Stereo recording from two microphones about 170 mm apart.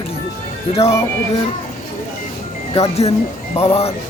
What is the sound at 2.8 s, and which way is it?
Speech, 40° left (ahead or behind).